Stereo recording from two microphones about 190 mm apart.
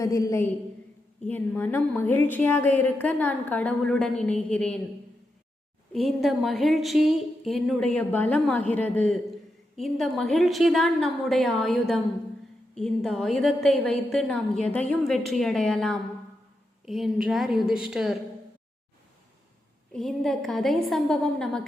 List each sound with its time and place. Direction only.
0.0 s a woman's voice: 15° left (ahead or behind)
5.9 s speech: centre (ahead or behind)
19.9 s speech: centre (ahead or behind)